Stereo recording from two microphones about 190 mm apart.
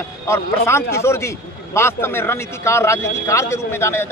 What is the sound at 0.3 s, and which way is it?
A man's voice, 15° left (ahead or behind).